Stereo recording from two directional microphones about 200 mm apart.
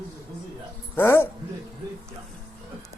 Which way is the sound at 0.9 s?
10° left (ahead or behind).